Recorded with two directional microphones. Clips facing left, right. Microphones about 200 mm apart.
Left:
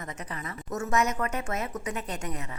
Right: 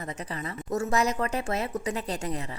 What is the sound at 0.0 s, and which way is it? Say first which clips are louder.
A woman's voice: right 3 dB; 30° right (ahead or behind).